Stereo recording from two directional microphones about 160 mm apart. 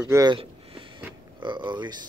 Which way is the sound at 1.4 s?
30° right (ahead or behind).